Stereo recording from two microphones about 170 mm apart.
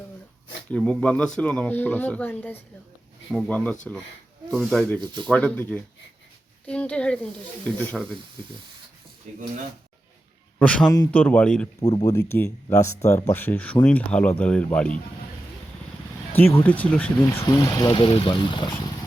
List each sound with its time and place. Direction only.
0.7 s speech: 5° left (ahead or behind)
4.9 s speech: 25° right (ahead or behind)
5.3 s speech: 10° left (ahead or behind)
10.6 s speech: 5° left (ahead or behind)
11.8 s speech: 20° left (ahead or behind)
16.3 s speech: 10° left (ahead or behind)
17.2 s speech: 20° left (ahead or behind)